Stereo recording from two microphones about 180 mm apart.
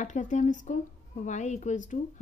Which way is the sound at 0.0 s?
45° left (ahead or behind).